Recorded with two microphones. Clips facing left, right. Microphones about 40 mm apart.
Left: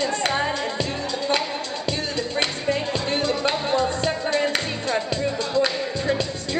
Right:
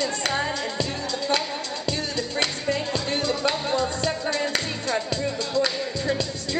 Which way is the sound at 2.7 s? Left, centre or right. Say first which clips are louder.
Left 2 dB; left.